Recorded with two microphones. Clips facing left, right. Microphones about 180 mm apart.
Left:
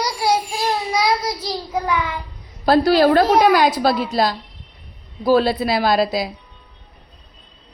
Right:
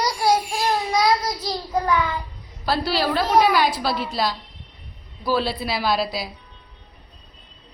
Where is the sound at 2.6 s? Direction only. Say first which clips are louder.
Left 9 dB; 45° left (ahead or behind).